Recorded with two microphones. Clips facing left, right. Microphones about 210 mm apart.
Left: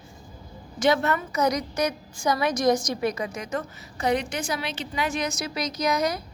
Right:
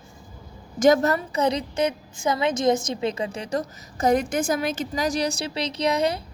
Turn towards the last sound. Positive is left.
turn(degrees=-30)  # may be behind; listen again after turning